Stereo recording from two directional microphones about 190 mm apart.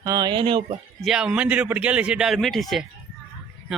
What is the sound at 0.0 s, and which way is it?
Speech, 20° right (ahead or behind).